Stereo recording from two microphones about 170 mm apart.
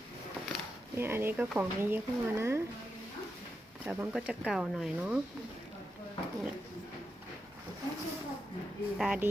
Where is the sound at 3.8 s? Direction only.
5° right (ahead or behind).